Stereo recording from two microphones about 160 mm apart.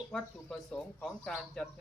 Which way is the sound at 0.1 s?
5° left (ahead or behind).